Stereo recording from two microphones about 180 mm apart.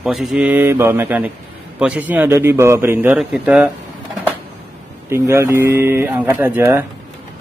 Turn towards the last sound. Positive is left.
turn(degrees=-10)  # may be behind; listen again after turning